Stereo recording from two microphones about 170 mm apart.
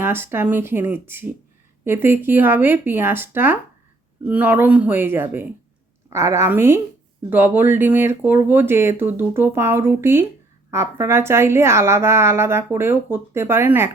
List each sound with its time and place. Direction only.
0.0 s a woman's voice: 15° right (ahead or behind)